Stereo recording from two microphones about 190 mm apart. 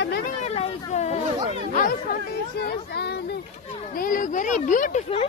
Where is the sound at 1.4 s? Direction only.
40° right (ahead or behind).